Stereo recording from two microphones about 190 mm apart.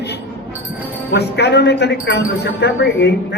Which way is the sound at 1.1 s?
60° left (ahead or behind).